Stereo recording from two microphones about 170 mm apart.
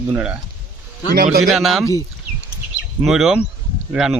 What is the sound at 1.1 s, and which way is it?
Speech, 60° right (ahead or behind).